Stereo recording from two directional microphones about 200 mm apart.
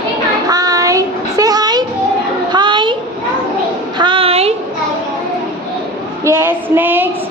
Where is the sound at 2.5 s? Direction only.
20° right (ahead or behind).